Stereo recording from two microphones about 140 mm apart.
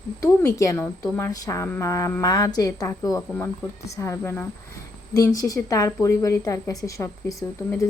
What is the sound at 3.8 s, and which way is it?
A woman's voice, 20° left (ahead or behind).